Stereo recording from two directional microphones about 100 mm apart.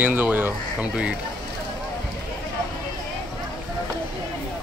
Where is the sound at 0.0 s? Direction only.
20° right (ahead or behind).